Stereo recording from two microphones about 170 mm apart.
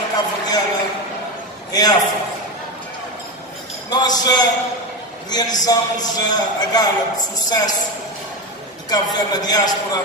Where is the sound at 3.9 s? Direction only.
25° left (ahead or behind).